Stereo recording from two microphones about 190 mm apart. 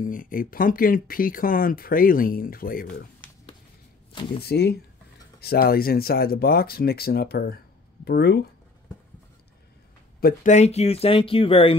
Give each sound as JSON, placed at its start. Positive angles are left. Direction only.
{"t": 0.0, "sound": "speech", "side_deg": 45}
{"t": 4.1, "sound": "speech", "side_deg": 25}
{"t": 4.4, "sound": "speech", "side_deg": 60}
{"t": 10.2, "sound": "speech", "side_deg": 40}